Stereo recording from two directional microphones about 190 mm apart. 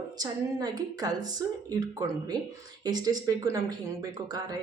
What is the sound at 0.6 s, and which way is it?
Speech, 20° right (ahead or behind).